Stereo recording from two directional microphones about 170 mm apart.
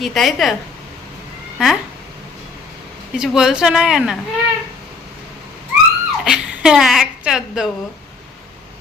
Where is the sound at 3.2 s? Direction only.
5° right (ahead or behind).